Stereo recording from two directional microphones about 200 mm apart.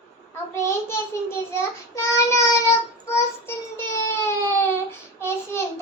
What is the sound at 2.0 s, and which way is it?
A child's voice, 15° left (ahead or behind).